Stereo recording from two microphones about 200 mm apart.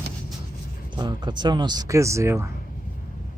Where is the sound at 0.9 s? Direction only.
20° right (ahead or behind).